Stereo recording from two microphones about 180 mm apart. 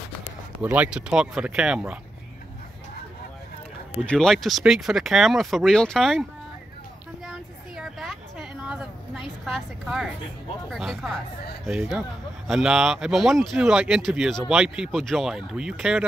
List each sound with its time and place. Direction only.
0.6 s speech: 10° right (ahead or behind)
3.9 s speech: 5° left (ahead or behind)
7.2 s a sound: centre (ahead or behind)
10.7 s speech: centre (ahead or behind)